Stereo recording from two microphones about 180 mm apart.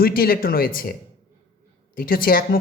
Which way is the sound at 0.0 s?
55° left (ahead or behind).